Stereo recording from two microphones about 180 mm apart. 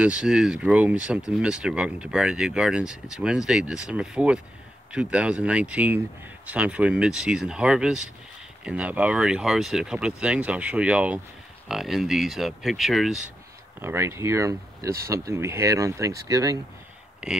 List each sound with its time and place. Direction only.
0.0 s speech: 5° right (ahead or behind)
13.7 s speech: 15° right (ahead or behind)
17.2 s speech: 5° right (ahead or behind)